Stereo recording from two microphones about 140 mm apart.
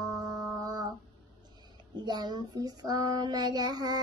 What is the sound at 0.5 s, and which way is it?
Speech, 30° right (ahead or behind).